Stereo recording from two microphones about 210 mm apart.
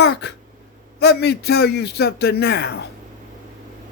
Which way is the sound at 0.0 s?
55° left (ahead or behind).